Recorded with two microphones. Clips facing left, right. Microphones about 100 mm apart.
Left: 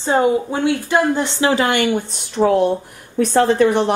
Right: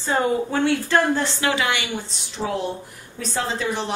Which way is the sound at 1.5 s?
45° left (ahead or behind).